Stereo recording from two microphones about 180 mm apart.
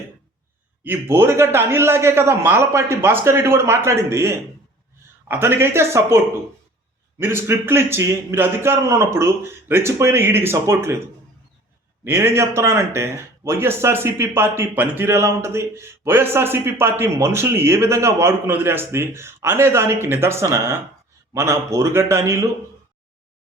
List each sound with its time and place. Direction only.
0.9 s speech: 10° right (ahead or behind)
12.0 s speech: 15° right (ahead or behind)